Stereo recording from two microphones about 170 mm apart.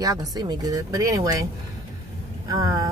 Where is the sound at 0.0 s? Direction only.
20° right (ahead or behind).